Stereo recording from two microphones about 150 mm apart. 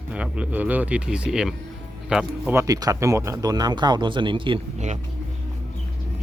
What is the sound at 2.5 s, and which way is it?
Speech, 25° right (ahead or behind).